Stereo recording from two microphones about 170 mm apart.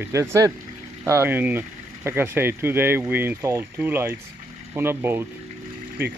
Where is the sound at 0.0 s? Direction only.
15° right (ahead or behind).